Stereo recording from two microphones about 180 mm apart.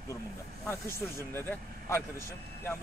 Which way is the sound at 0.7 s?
15° left (ahead or behind).